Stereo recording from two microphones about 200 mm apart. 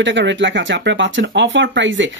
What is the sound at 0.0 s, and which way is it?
Speech, 65° right (ahead or behind).